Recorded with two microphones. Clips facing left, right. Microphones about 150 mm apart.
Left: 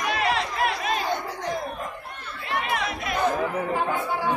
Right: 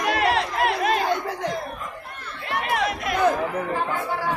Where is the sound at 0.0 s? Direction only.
65° right (ahead or behind).